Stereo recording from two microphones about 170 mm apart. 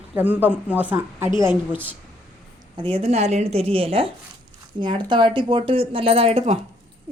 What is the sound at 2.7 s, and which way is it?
Speech, 30° right (ahead or behind).